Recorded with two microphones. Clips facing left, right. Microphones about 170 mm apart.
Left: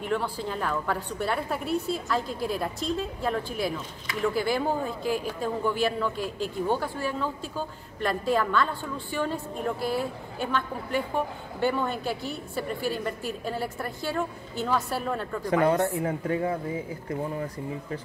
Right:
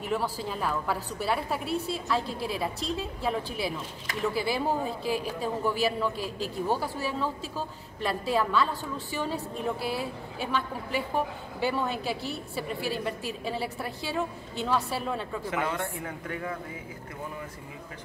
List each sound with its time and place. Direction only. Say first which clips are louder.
0.0 s a woman's voice: left 1 dB; 5° right (ahead or behind)
5.0 s speech: left 2 dB; 35° right (ahead or behind)
5.4 s a woman's voice: left 1 dB; 5° right (ahead or behind)
6.1 s speech: left 2 dB; 35° right (ahead or behind)
6.7 s a woman's voice: even; 5° right (ahead or behind)
15.5 s a woman's voice: left 10 dB; 35° left (ahead or behind)